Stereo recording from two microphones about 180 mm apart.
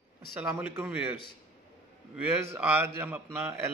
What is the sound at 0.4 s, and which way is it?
Speech, 10° right (ahead or behind).